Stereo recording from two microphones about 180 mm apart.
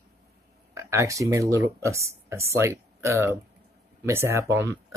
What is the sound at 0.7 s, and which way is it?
Speech, 15° right (ahead or behind).